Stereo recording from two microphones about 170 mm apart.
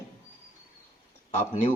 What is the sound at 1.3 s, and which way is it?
Speech, 45° left (ahead or behind).